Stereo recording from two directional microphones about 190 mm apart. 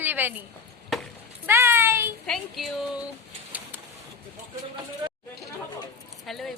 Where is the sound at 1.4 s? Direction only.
10° right (ahead or behind).